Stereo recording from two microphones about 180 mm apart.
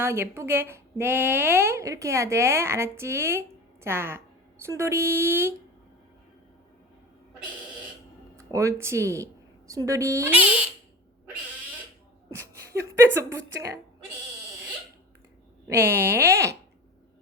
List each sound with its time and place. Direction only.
0.0 s speech: 15° right (ahead or behind)
8.4 s a woman's voice: 15° right (ahead or behind)
13.1 s speech: 15° right (ahead or behind)
15.7 s speech: 10° right (ahead or behind)